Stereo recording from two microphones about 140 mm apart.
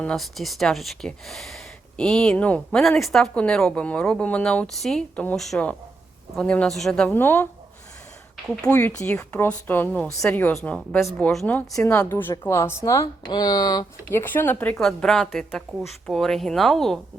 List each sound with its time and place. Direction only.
0.0 s speech: 5° left (ahead or behind)
8.7 s speech: 10° left (ahead or behind); by 13.8 s 30° left (ahead or behind)
14.1 s speech: 15° left (ahead or behind)